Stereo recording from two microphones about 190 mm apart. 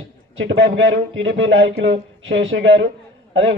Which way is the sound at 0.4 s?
85° right.